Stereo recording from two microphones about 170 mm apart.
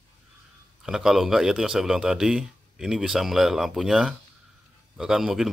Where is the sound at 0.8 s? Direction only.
Centre (ahead or behind).